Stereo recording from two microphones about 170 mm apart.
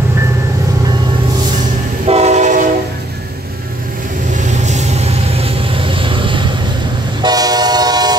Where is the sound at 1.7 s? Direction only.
40° right (ahead or behind).